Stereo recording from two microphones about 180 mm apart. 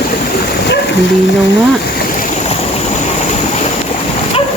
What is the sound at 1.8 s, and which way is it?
Boat, 60° left (ahead or behind).